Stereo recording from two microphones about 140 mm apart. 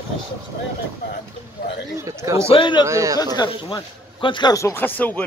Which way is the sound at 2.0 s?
20° right (ahead or behind).